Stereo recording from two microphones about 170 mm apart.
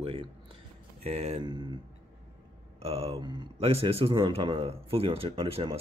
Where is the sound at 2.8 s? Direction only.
35° right (ahead or behind).